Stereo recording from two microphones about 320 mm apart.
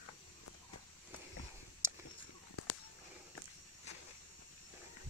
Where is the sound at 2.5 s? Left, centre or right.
Left.